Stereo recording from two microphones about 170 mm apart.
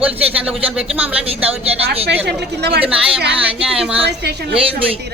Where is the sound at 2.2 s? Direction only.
75° right (ahead or behind).